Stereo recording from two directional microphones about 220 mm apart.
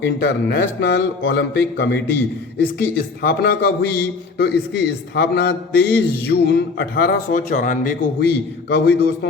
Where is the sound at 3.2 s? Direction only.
45° left (ahead or behind).